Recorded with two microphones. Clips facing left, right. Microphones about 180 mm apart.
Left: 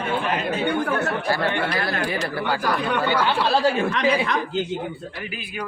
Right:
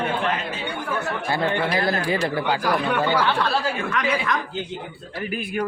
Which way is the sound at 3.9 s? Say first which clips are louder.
Left 2 dB; 35° left (ahead or behind).